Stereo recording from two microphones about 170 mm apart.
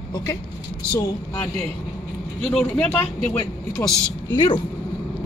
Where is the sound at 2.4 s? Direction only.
Centre (ahead or behind).